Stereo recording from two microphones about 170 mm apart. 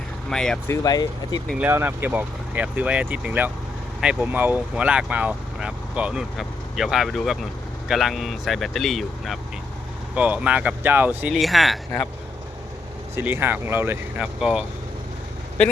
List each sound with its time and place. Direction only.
0.3 s speech: 5° left (ahead or behind)
0.7 s speech: 20° left (ahead or behind)
1.5 s speech: 10° right (ahead or behind)
13.1 s speech: 15° right (ahead or behind)